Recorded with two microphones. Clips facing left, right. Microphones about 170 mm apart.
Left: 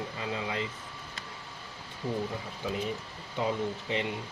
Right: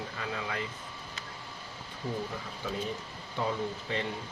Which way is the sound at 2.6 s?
15° left (ahead or behind).